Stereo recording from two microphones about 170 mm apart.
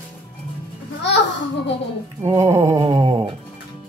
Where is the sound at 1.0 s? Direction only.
90° left.